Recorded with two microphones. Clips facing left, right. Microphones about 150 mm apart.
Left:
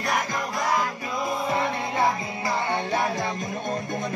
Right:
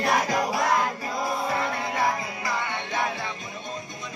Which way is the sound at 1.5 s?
20° left (ahead or behind).